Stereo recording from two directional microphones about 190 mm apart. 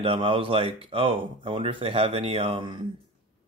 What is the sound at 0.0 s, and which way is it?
Speech, 30° right (ahead or behind).